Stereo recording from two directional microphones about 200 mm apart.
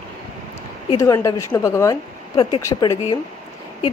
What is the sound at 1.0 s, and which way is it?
A woman's voice, 15° left (ahead or behind).